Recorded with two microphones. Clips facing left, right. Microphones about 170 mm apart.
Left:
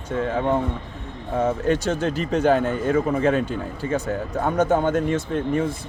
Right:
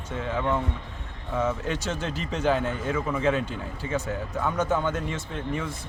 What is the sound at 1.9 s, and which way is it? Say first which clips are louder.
Speech: left 8 dB; 55° left (ahead or behind).